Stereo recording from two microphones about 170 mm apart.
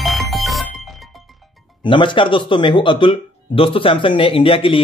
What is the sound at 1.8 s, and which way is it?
Speech, 30° left (ahead or behind).